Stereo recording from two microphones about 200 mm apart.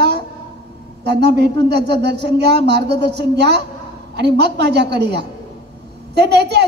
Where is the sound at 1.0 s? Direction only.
55° right (ahead or behind).